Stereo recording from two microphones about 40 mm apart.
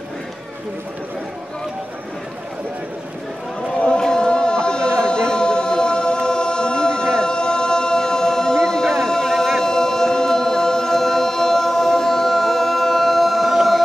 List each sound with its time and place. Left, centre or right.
4.0 s chant: centre
13.6 s music: centre